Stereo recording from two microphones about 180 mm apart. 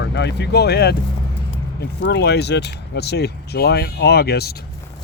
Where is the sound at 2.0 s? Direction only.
70° left (ahead or behind).